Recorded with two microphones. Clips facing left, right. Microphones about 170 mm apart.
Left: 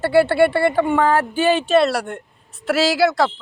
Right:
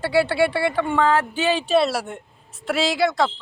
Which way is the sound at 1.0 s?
50° left (ahead or behind).